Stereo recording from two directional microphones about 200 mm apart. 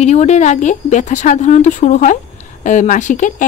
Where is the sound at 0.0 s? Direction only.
35° left (ahead or behind).